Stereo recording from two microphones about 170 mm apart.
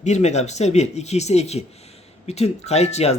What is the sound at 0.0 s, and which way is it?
Speech, 40° left (ahead or behind).